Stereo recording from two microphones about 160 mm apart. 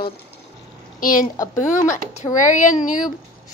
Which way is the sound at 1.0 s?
60° left (ahead or behind).